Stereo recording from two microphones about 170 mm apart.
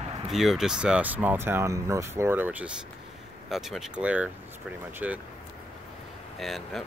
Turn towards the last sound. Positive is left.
turn(degrees=0)  # may be behind; listen again after turning